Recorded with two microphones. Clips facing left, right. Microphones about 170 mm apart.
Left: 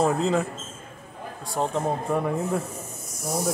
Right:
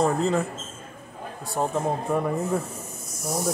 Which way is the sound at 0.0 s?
Centre (ahead or behind).